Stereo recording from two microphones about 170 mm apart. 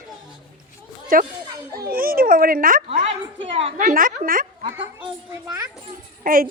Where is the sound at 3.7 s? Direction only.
55° right (ahead or behind).